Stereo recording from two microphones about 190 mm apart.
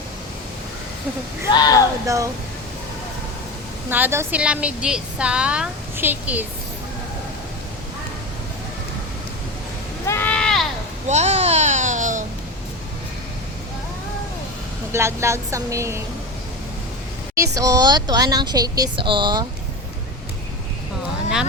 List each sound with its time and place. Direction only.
1.5 s speech: 20° left (ahead or behind)
2.0 s a woman's voice: 15° right (ahead or behind)
3.8 s a woman's voice: 10° right (ahead or behind)
10.1 s a sound: 10° left (ahead or behind)
11.1 s babbling: 35° right (ahead or behind)
14.9 s a woman's voice: 15° right (ahead or behind)
17.4 s speech: 15° right (ahead or behind)